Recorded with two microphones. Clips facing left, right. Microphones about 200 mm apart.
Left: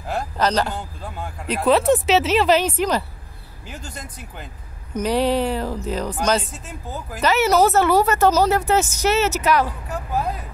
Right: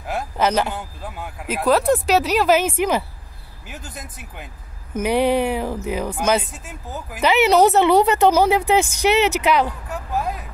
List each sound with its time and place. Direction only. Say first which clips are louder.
0.1 s a man's voice: right 1 dB; 10° right (ahead or behind)
9.8 s vehicle: even; centre (ahead or behind)